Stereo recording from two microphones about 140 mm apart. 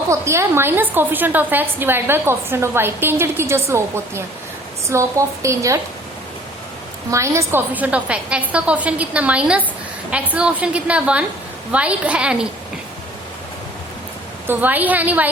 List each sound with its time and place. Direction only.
0.1 s a woman's voice: 20° right (ahead or behind)
7.1 s a woman's voice: 20° right (ahead or behind)
14.4 s a woman's voice: 15° right (ahead or behind)